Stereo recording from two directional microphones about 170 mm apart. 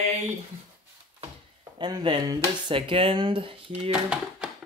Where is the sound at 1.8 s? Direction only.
25° right (ahead or behind).